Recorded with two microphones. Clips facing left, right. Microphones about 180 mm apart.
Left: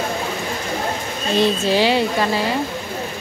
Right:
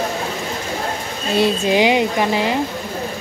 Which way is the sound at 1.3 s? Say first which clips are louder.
Right 1 dB; 15° right (ahead or behind).